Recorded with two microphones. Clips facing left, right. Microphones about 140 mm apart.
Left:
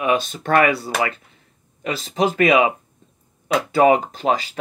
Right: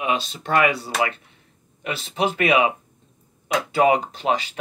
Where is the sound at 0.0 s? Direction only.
50° left (ahead or behind).